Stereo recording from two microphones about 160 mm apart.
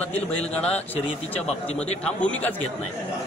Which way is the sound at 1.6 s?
40° left (ahead or behind).